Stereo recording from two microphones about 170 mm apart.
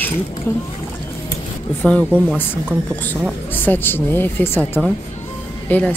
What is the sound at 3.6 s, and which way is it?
Speech, 10° left (ahead or behind).